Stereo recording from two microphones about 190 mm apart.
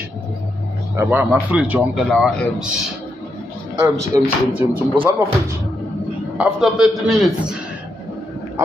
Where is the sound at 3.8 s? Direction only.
15° right (ahead or behind).